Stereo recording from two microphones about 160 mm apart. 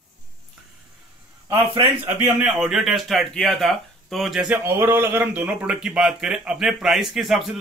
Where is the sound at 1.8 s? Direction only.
10° right (ahead or behind).